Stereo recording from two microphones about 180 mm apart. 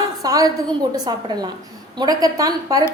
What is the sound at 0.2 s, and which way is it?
A woman's voice, 20° right (ahead or behind).